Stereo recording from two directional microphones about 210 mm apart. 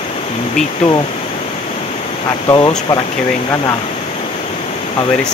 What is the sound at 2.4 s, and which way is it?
Speech, 20° left (ahead or behind).